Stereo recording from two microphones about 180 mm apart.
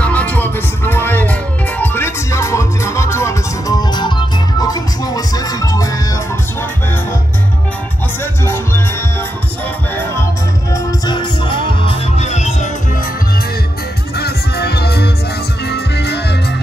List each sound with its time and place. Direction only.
0.0 s music: 10° left (ahead or behind)
8.2 s music: 15° left (ahead or behind)
10.7 s music: 20° left (ahead or behind); by 12.6 s 40° left (ahead or behind)
14.1 s music: 65° left (ahead or behind)